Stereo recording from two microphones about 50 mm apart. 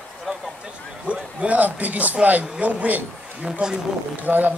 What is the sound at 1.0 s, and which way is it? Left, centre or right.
Speech, right.